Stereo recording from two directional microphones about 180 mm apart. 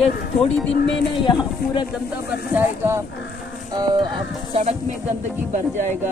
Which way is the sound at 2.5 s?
10° right (ahead or behind).